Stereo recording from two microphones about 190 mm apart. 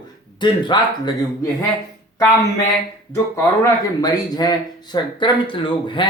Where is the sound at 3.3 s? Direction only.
15° left (ahead or behind).